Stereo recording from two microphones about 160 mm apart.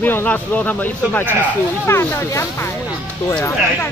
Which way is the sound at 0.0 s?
10° left (ahead or behind).